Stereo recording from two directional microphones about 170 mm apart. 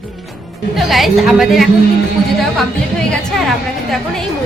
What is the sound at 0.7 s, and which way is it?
A woman's voice, centre (ahead or behind).